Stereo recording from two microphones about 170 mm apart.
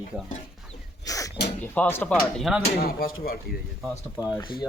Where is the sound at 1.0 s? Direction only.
20° left (ahead or behind).